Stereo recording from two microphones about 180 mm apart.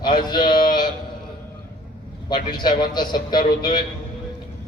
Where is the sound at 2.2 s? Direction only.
25° left (ahead or behind).